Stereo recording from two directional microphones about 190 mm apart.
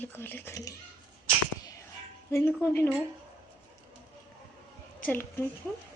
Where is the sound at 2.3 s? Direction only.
10° left (ahead or behind).